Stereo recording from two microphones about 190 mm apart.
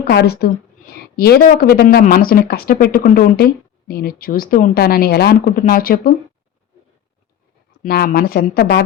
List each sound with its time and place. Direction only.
0.0 s a woman's voice: 60° left (ahead or behind)
7.8 s speech: 55° left (ahead or behind)